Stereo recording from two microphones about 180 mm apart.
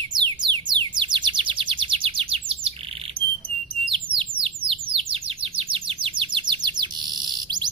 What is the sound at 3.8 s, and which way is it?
Bird, 30° right (ahead or behind).